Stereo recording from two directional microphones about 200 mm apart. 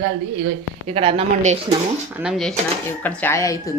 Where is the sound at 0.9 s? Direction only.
30° right (ahead or behind).